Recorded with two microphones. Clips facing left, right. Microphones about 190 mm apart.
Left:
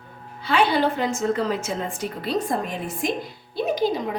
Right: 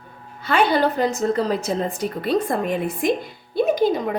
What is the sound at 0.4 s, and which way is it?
A woman's voice, 45° right (ahead or behind).